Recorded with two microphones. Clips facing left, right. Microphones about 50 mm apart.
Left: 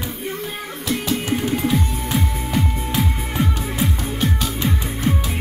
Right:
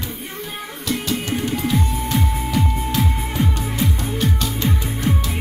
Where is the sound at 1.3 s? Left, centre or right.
Centre.